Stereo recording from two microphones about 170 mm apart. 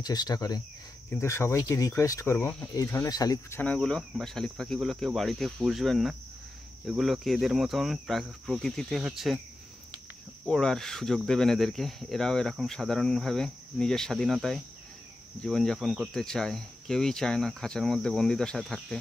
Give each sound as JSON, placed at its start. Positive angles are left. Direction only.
{"t": 0.0, "sound": "speech", "side_deg": 25}
{"t": 10.4, "sound": "speech", "side_deg": 0}